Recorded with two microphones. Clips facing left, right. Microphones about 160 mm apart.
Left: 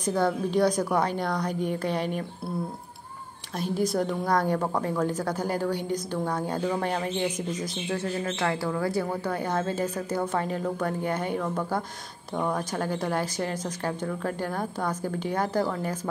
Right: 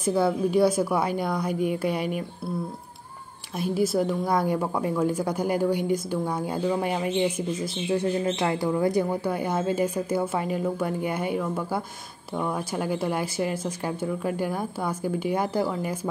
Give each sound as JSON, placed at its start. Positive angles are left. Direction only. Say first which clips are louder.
{"t": 0.0, "sound": "a woman's voice", "louder": "right 3 dB", "side_deg": -10}
{"t": 3.5, "sound": "a woman's voice", "louder": "right 2 dB", "side_deg": -5}